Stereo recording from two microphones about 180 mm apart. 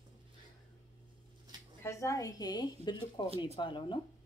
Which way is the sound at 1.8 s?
15° left (ahead or behind).